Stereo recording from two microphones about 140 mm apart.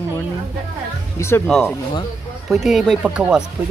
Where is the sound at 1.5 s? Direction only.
5° left (ahead or behind).